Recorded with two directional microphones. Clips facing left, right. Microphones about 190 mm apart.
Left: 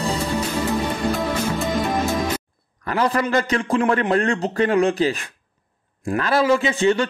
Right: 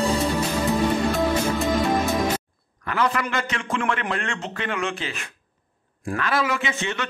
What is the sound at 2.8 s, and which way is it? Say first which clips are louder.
A man's voice: left 4 dB; 35° left (ahead or behind).